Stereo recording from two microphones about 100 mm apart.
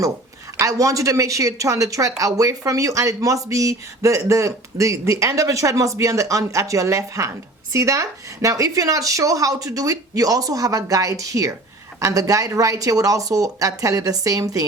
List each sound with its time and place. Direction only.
0.6 s speech: 35° right (ahead or behind)